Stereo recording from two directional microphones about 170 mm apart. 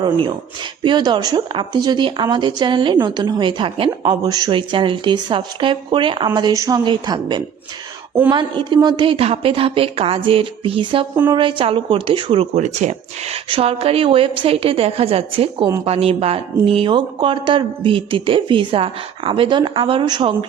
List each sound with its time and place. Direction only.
0.0 s speech: 25° right (ahead or behind)